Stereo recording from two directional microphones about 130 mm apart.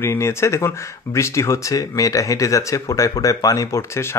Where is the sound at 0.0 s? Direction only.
20° left (ahead or behind).